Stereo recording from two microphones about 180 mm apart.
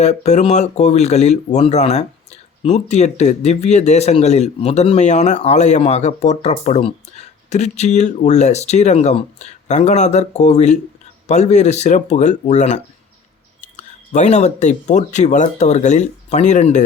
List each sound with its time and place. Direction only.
0.0 s speech: 40° left (ahead or behind)